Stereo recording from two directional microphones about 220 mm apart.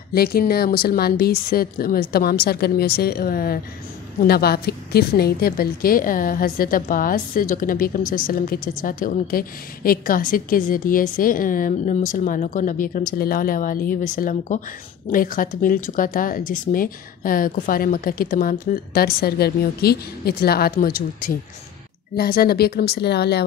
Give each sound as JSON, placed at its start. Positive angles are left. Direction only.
{"t": 0.1, "sound": "a woman's voice", "side_deg": 45}
{"t": 22.1, "sound": "speech", "side_deg": 45}